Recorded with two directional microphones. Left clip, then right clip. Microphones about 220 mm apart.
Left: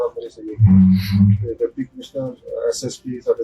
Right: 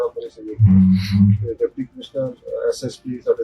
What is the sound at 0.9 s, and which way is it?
Speech, 50° right (ahead or behind).